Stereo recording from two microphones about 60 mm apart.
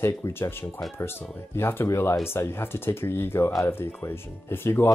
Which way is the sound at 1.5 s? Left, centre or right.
Left.